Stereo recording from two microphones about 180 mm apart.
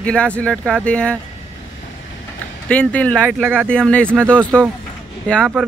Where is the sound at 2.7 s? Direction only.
5° left (ahead or behind).